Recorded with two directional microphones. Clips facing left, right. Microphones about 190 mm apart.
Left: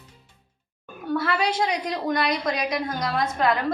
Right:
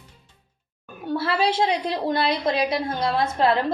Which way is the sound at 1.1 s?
30° right (ahead or behind).